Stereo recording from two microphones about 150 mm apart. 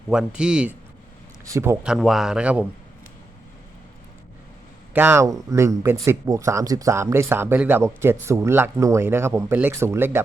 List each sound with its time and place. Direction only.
0.1 s speech: 5° right (ahead or behind)
1.5 s speech: 20° right (ahead or behind)
1.8 s speech: 5° right (ahead or behind)
4.9 s speech: 15° right (ahead or behind)